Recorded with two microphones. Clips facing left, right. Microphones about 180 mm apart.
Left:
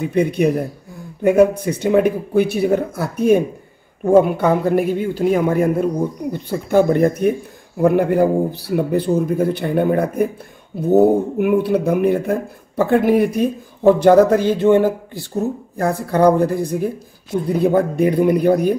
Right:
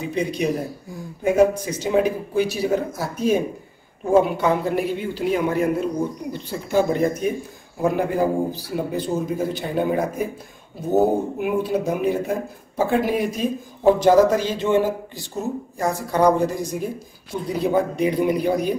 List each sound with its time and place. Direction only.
0.0 s a man's voice: 55° left (ahead or behind)
11.3 s a man's voice: 60° left (ahead or behind)